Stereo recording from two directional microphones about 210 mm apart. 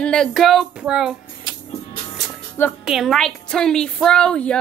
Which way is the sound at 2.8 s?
Centre (ahead or behind).